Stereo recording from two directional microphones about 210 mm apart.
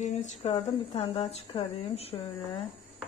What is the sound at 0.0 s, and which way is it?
Speech, 35° left (ahead or behind).